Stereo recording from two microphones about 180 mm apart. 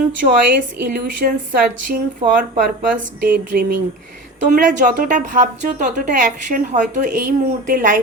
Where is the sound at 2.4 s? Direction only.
55° right (ahead or behind).